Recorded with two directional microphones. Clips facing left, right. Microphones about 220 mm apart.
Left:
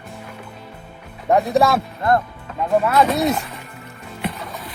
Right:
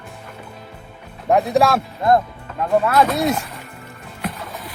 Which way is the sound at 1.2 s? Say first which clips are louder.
Even; centre (ahead or behind).